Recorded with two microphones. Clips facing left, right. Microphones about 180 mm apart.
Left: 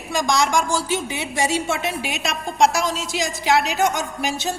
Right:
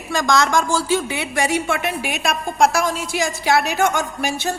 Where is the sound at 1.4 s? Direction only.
60° right (ahead or behind).